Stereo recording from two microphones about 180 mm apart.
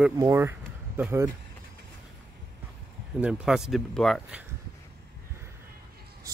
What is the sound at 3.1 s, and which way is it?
Speech, 5° right (ahead or behind).